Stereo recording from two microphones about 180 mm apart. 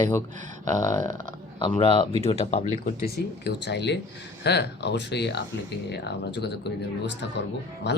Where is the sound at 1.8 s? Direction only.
30° left (ahead or behind).